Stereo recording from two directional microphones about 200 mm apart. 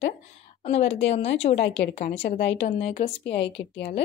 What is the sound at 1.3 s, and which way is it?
Speech, 60° left (ahead or behind).